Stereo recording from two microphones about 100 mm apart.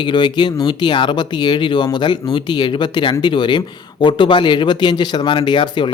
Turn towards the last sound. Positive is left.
turn(degrees=50)  # may be behind; listen again after turning